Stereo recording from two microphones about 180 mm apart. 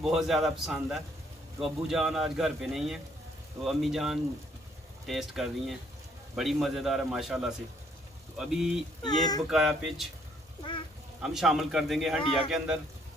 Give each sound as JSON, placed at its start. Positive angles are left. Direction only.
{"t": 0.0, "sound": "a man's voice", "side_deg": 0}
{"t": 9.0, "sound": "speech", "side_deg": 20}
{"t": 9.5, "sound": "a man's voice", "side_deg": 0}
{"t": 11.2, "sound": "a man's voice", "side_deg": 0}